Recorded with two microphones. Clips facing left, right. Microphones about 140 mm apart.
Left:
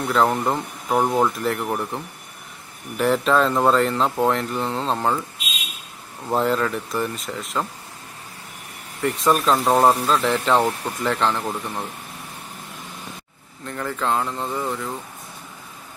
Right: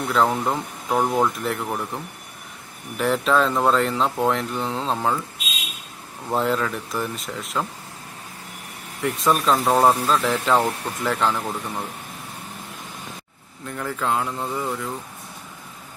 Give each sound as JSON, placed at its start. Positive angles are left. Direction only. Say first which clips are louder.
{"t": 0.1, "sound": "speech", "louder": "left 1 dB", "side_deg": 0}
{"t": 3.0, "sound": "speech", "louder": "left 1 dB", "side_deg": 0}
{"t": 6.2, "sound": "speech", "louder": "left 2 dB", "side_deg": 0}
{"t": 9.0, "sound": "speech", "louder": "left 1 dB", "side_deg": 0}
{"t": 13.7, "sound": "speech", "louder": "left 1 dB", "side_deg": -5}